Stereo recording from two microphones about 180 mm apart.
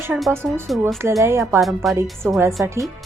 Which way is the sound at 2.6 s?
15° right (ahead or behind).